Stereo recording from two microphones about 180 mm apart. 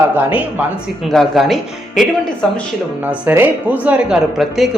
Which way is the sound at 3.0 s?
10° right (ahead or behind).